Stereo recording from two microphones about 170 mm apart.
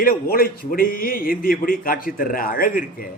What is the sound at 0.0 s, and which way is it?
A man's voice, 60° left (ahead or behind).